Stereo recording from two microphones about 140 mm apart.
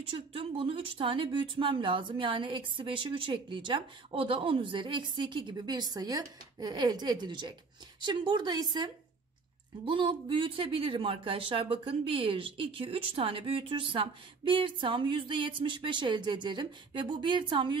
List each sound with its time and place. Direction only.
0.1 s speech: 40° right (ahead or behind)